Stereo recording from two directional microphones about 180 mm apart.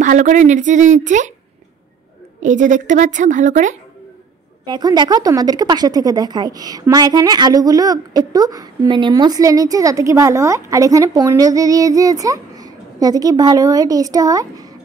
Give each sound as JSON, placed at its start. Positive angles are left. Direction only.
{"t": 0.0, "sound": "a woman's voice", "side_deg": -45}
{"t": 2.4, "sound": "a woman's voice", "side_deg": -45}
{"t": 4.6, "sound": "a woman's voice", "side_deg": -25}